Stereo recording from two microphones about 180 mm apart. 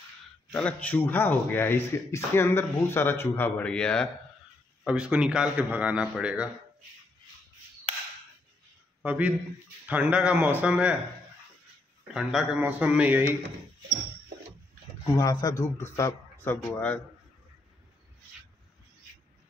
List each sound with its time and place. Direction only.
0.5 s speech: 10° left (ahead or behind)
4.8 s a man's voice: 5° right (ahead or behind)
9.0 s speech: 5° right (ahead or behind)
12.1 s speech: centre (ahead or behind)
15.1 s speech: 20° left (ahead or behind)
15.5 s speech: 40° left (ahead or behind)
16.4 s speech: 10° left (ahead or behind)